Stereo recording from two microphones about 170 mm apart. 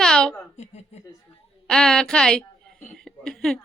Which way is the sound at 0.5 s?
40° left (ahead or behind).